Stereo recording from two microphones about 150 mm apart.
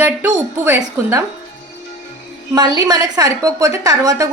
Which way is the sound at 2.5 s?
25° right (ahead or behind).